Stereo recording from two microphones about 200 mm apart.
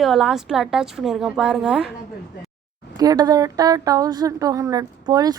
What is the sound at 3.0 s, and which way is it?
Speech, 20° right (ahead or behind).